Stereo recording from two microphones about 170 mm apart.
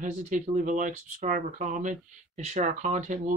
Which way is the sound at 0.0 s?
45° right (ahead or behind).